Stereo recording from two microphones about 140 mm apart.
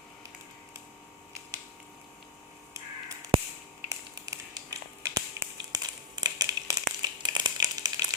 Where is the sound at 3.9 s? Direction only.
20° right (ahead or behind).